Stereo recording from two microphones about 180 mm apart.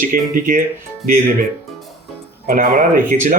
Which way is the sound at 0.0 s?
50° right (ahead or behind).